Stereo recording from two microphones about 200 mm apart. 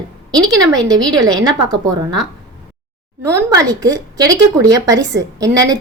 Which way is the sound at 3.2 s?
15° right (ahead or behind).